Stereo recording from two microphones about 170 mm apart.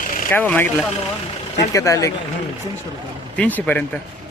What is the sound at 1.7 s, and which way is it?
Speech, 20° left (ahead or behind).